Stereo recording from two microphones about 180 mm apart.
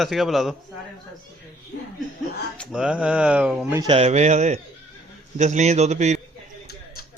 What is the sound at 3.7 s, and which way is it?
A man's voice, 30° right (ahead or behind).